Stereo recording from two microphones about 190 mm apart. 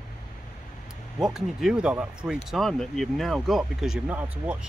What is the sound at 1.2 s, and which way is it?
Speech, centre (ahead or behind).